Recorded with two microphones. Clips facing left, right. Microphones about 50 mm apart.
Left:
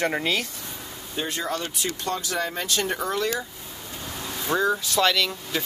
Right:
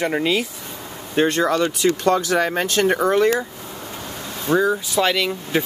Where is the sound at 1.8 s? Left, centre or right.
Right.